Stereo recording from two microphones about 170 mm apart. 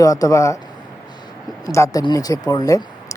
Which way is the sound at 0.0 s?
20° left (ahead or behind).